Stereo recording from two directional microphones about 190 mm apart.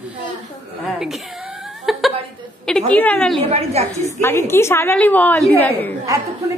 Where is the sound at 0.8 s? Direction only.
Centre (ahead or behind).